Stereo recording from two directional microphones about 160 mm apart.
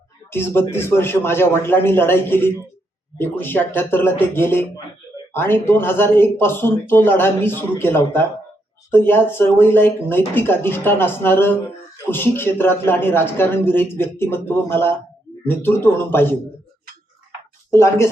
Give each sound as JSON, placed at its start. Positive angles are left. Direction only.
{"t": 0.3, "sound": "speech", "side_deg": 15}
{"t": 17.7, "sound": "speech", "side_deg": 15}